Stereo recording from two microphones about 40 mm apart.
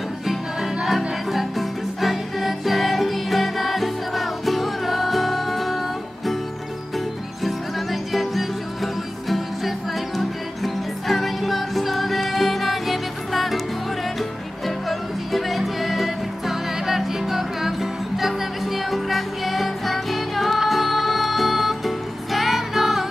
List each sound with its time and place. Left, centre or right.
0.8 s music: centre
7.4 s music: centre
14.9 s music: centre